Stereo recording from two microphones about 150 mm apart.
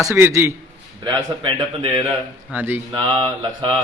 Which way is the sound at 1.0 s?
30° right (ahead or behind).